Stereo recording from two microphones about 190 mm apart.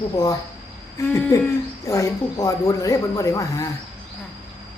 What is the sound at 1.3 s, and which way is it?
Speech, 15° left (ahead or behind).